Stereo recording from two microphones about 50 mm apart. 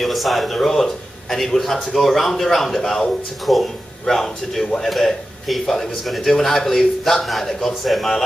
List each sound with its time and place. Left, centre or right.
0.0 s a man's voice: centre